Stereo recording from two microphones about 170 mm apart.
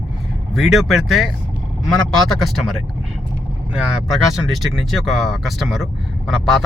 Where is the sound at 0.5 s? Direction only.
Centre (ahead or behind).